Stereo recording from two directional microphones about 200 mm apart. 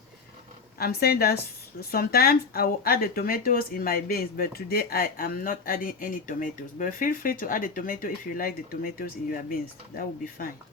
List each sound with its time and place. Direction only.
0.8 s speech: 50° left (ahead or behind)